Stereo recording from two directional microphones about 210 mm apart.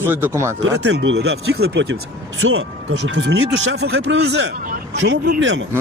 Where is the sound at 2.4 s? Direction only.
65° right (ahead or behind).